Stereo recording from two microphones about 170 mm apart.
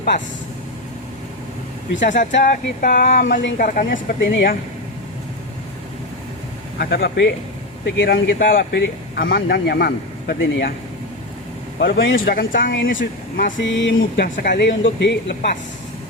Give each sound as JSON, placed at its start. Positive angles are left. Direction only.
{"t": 2.0, "sound": "a sound", "side_deg": 50}
{"t": 4.2, "sound": "speech", "side_deg": 90}
{"t": 6.7, "sound": "speech", "side_deg": 75}
{"t": 8.4, "sound": "speech", "side_deg": 55}
{"t": 8.7, "sound": "speech", "side_deg": 80}
{"t": 11.8, "sound": "speech", "side_deg": 85}
{"t": 14.3, "sound": "a sound", "side_deg": 50}
{"t": 14.6, "sound": "speech", "side_deg": 90}